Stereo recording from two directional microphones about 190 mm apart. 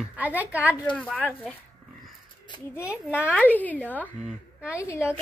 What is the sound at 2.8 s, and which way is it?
Speech, 5° right (ahead or behind).